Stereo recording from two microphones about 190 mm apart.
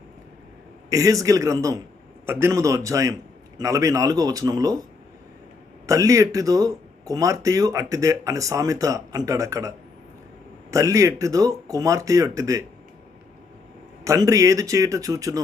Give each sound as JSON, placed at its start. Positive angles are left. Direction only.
{"t": 0.9, "sound": "speech", "side_deg": -15}
{"t": 5.8, "sound": "speech", "side_deg": -15}
{"t": 14.0, "sound": "speech", "side_deg": -15}